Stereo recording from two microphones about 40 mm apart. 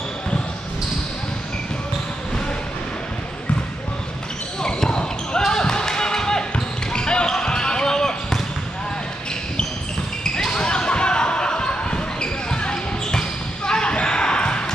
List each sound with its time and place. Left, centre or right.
4.6 s basketball bounce: centre
10.2 s basketball bounce: centre